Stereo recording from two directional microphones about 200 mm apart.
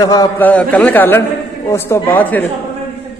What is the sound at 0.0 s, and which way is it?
Speech, 20° left (ahead or behind).